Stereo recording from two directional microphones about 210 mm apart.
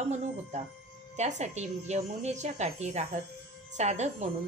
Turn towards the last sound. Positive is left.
turn(degrees=-35)  # may be behind; listen again after turning